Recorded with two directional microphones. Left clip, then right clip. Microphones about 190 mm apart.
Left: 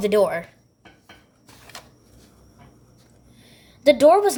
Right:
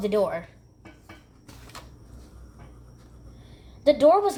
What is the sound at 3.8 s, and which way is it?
Speech, 30° left (ahead or behind).